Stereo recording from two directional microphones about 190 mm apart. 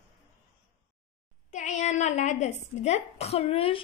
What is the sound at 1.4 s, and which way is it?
Speech, 40° left (ahead or behind).